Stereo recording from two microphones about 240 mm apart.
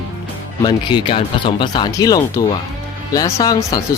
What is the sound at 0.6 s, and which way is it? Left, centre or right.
Speech, centre.